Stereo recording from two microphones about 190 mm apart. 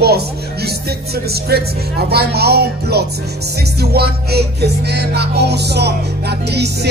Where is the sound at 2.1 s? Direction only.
55° right (ahead or behind).